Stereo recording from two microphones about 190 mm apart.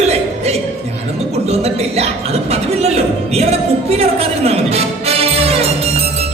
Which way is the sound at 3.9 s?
30° right (ahead or behind).